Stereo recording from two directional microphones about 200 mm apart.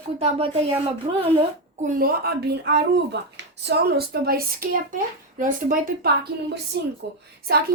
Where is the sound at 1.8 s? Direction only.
45° right (ahead or behind).